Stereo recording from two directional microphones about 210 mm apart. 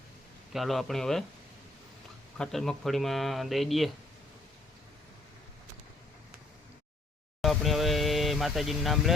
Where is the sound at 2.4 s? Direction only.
Centre (ahead or behind).